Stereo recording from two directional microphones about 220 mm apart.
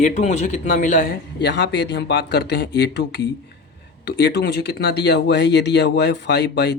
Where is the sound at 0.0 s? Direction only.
30° left (ahead or behind).